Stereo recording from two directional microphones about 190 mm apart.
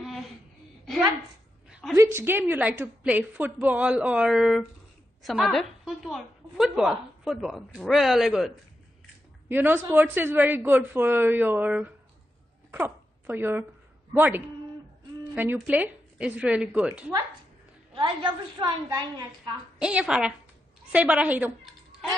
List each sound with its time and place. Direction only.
1.7 s a sound: centre (ahead or behind)
2.0 s a man's voice: 15° right (ahead or behind)
17.9 s a woman's voice: 25° right (ahead or behind)
19.8 s a woman's voice: 5° right (ahead or behind)